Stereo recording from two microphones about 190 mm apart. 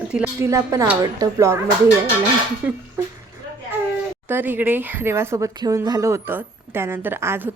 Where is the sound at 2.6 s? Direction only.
10° right (ahead or behind).